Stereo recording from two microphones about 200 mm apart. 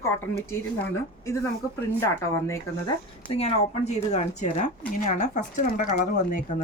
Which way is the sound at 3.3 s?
30° left (ahead or behind).